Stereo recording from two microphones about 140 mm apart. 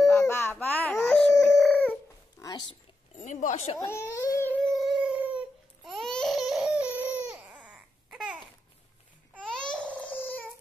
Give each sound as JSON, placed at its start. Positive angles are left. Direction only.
{"t": 0.0, "sound": "baby cry", "side_deg": 20}
{"t": 2.3, "sound": "a sound", "side_deg": 25}
{"t": 3.2, "sound": "a sound", "side_deg": 65}
{"t": 3.8, "sound": "speech", "side_deg": 20}
{"t": 4.3, "sound": "a sound", "side_deg": 15}
{"t": 4.7, "sound": "cat", "side_deg": -5}
{"t": 5.9, "sound": "baby cry", "side_deg": 0}
{"t": 9.4, "sound": "babbling", "side_deg": 5}
{"t": 9.8, "sound": "crying", "side_deg": 10}